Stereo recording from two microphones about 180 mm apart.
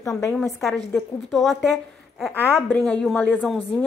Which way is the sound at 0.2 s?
10° left (ahead or behind).